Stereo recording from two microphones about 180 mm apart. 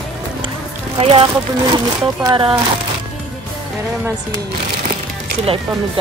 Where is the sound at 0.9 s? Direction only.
30° right (ahead or behind).